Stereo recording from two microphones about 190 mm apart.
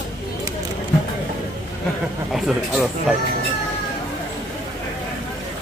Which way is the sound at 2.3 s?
Centre (ahead or behind).